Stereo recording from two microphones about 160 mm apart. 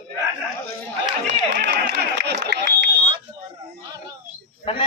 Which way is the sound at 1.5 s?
90° right.